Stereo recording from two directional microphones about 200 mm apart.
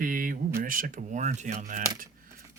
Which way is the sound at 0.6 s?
45° right (ahead or behind).